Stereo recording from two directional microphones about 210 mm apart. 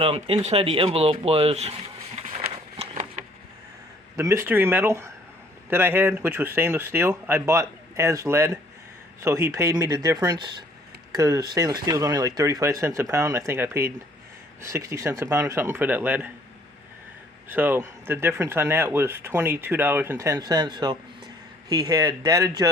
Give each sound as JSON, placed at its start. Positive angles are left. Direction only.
{"t": 0.0, "sound": "speech", "side_deg": -25}
{"t": 2.2, "sound": "a sound", "side_deg": -35}
{"t": 4.2, "sound": "speech", "side_deg": -15}
{"t": 17.5, "sound": "speech", "side_deg": -10}